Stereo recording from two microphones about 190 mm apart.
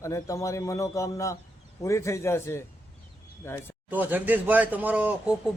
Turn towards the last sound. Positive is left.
turn(degrees=-5)  # may be behind; listen again after turning